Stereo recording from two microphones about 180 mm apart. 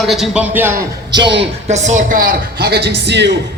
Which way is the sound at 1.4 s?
40° right (ahead or behind).